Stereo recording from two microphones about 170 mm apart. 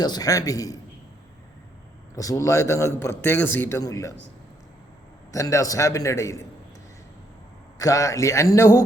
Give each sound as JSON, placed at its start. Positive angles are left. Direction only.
{"t": 0.0, "sound": "a man's voice", "side_deg": 25}
{"t": 2.1, "sound": "a man's voice", "side_deg": 20}
{"t": 5.3, "sound": "a man's voice", "side_deg": 20}
{"t": 7.8, "sound": "a man's voice", "side_deg": 20}